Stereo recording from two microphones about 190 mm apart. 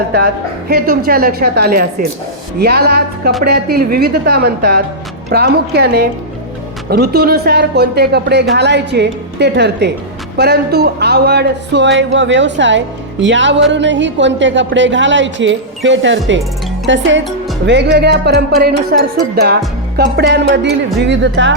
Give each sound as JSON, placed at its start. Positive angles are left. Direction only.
{"t": 0.7, "sound": "a woman's voice", "side_deg": -50}
{"t": 11.9, "sound": "a woman's voice", "side_deg": -75}
{"t": 17.7, "sound": "speech", "side_deg": -65}